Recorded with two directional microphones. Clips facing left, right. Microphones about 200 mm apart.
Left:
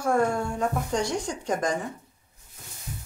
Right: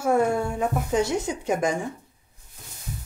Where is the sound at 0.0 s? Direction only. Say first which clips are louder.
Right 2 dB; 5° right (ahead or behind).